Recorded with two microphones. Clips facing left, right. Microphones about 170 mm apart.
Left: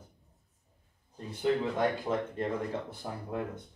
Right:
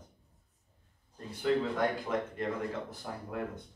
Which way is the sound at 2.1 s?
30° left (ahead or behind).